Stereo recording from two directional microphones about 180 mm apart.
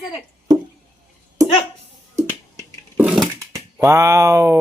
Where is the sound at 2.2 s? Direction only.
15° right (ahead or behind).